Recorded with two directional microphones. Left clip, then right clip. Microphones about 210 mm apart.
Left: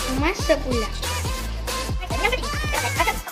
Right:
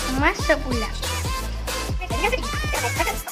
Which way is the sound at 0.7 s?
Centre (ahead or behind).